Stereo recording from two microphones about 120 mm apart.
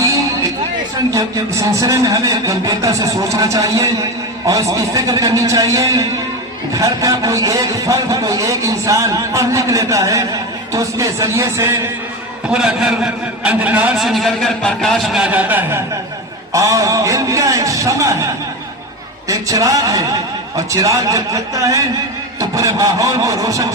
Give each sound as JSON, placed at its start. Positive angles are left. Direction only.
{"t": 1.7, "sound": "a man's voice", "side_deg": -25}
{"t": 12.5, "sound": "a man's voice", "side_deg": -5}
{"t": 13.9, "sound": "speech", "side_deg": 0}
{"t": 16.5, "sound": "a man's voice", "side_deg": -25}
{"t": 19.3, "sound": "a man's voice", "side_deg": -30}